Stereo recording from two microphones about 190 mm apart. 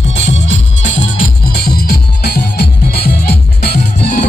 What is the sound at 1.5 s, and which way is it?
Music, 55° left (ahead or behind).